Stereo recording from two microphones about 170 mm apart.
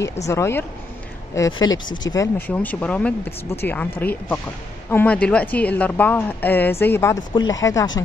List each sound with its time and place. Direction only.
0.3 s a woman's voice: 15° left (ahead or behind)
2.1 s a woman's voice: 10° left (ahead or behind)